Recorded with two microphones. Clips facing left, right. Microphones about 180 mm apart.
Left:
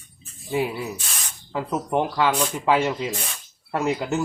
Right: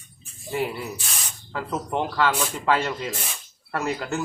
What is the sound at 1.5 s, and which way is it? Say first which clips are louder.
Speech: left 3 dB; 15° left (ahead or behind).